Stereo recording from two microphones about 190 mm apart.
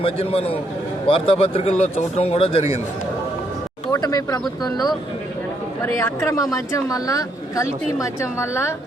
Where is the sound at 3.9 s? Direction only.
20° left (ahead or behind).